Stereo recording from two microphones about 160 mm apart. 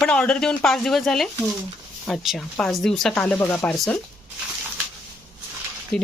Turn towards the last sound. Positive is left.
turn(degrees=5)  # may be behind; listen again after turning